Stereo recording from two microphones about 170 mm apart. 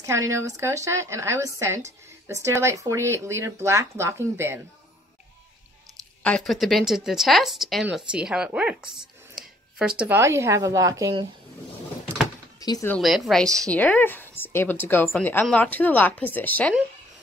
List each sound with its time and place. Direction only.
0.0 s speech: 15° right (ahead or behind)
6.2 s speech: 5° left (ahead or behind); by 11.2 s 20° right (ahead or behind)
12.5 s speech: 20° left (ahead or behind)
12.9 s a woman's voice: centre (ahead or behind)